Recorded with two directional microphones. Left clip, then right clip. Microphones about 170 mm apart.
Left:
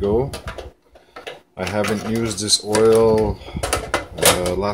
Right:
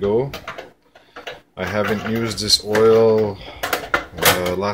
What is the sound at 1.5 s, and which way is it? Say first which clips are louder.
Speech: right 1 dB; 10° left (ahead or behind).